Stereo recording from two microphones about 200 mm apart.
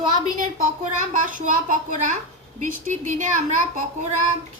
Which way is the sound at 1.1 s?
40° right (ahead or behind).